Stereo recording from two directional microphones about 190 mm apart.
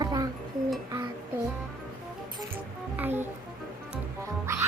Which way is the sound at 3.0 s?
10° right (ahead or behind).